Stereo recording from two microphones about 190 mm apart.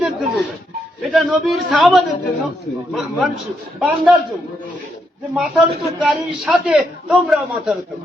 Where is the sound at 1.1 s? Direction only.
Centre (ahead or behind).